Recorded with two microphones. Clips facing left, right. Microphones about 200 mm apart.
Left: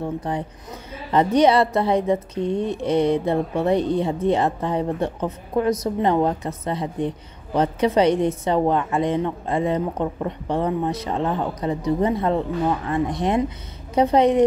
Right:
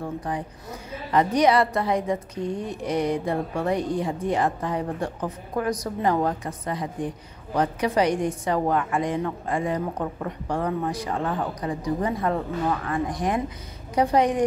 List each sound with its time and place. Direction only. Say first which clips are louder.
0.3 s a woman's voice: left 3 dB; 25° left (ahead or behind)